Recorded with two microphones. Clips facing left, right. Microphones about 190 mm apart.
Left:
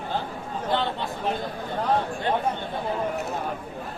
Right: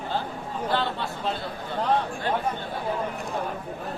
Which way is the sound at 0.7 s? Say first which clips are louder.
Left 2 dB; 20° left (ahead or behind).